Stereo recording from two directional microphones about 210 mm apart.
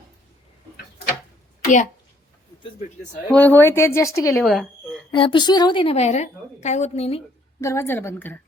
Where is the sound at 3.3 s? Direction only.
10° left (ahead or behind).